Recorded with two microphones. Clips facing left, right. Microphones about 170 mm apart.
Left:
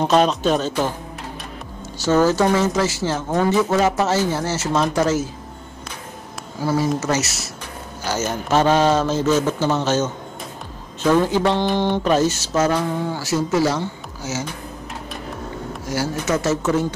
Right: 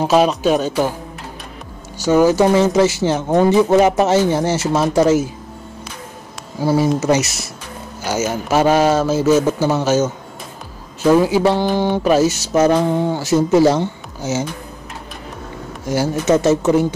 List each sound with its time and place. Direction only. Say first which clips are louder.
0.0 s speech: right 3 dB; 5° right (ahead or behind)
2.0 s speech: right 4 dB; 15° right (ahead or behind)
6.6 s speech: right 5 dB; 10° right (ahead or behind)
15.9 s speech: right 6 dB; 20° right (ahead or behind)